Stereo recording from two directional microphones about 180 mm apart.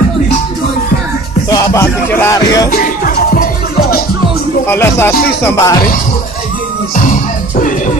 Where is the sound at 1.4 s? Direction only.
20° left (ahead or behind).